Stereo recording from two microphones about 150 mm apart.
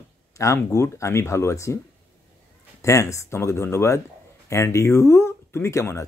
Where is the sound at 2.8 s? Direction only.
20° left (ahead or behind).